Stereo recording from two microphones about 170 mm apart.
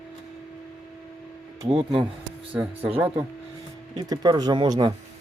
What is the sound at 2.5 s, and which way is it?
Speech, 10° right (ahead or behind).